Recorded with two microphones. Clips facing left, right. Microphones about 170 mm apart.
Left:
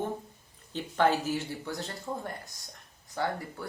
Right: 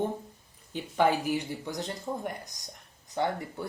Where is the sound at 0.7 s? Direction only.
10° right (ahead or behind).